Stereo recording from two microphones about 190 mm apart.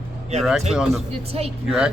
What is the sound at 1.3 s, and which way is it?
Speech, 30° right (ahead or behind).